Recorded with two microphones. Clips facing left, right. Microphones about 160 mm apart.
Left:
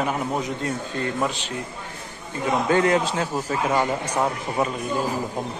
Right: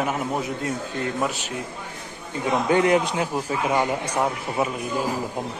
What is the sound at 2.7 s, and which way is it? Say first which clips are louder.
A man's voice: right 1 dB; 15° right (ahead or behind).